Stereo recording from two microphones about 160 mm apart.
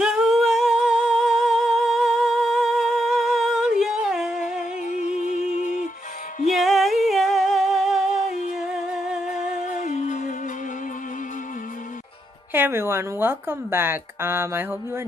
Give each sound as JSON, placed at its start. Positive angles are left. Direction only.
{"t": 0.0, "sound": "humming", "side_deg": -5}
{"t": 4.4, "sound": "music", "side_deg": 50}
{"t": 6.4, "sound": "music", "side_deg": 0}
{"t": 9.8, "sound": "music", "side_deg": 50}
{"t": 12.5, "sound": "speech", "side_deg": -15}